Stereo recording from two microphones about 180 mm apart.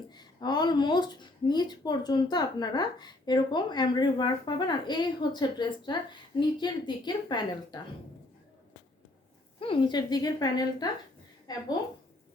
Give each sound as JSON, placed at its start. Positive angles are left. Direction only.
{"t": 0.1, "sound": "speech", "side_deg": 25}
{"t": 9.6, "sound": "speech", "side_deg": 30}